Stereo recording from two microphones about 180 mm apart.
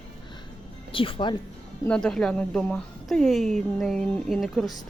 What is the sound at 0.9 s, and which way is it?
Speech, 30° left (ahead or behind).